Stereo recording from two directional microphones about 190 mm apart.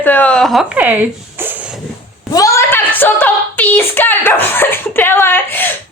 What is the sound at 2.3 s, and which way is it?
A woman's voice, 15° left (ahead or behind).